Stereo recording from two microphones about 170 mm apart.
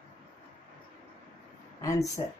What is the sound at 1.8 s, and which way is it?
Speech, 20° left (ahead or behind).